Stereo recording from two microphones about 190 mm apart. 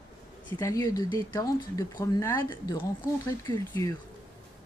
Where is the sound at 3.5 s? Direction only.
25° left (ahead or behind).